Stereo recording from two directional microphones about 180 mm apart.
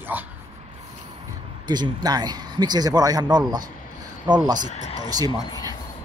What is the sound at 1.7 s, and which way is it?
Speech, 25° right (ahead or behind).